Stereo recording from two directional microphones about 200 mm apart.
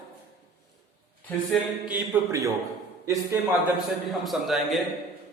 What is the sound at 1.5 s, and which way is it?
A man's voice, 5° right (ahead or behind).